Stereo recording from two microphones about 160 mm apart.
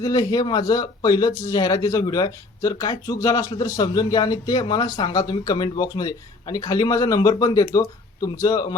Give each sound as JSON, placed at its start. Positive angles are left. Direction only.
{"t": 0.0, "sound": "speech", "side_deg": 20}